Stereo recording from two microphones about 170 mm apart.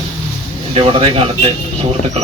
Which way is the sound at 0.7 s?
35° right (ahead or behind).